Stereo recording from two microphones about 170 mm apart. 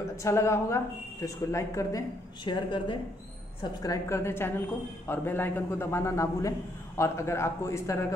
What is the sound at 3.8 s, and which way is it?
A man's voice, 20° left (ahead or behind).